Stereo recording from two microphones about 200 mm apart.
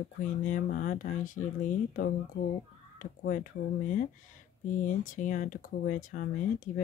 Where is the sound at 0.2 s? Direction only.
40° left (ahead or behind).